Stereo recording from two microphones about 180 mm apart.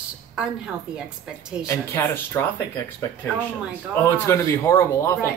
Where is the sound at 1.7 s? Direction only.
15° left (ahead or behind).